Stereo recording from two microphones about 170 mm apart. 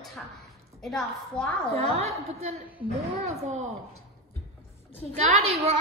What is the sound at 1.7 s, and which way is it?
A woman's voice, 40° right (ahead or behind).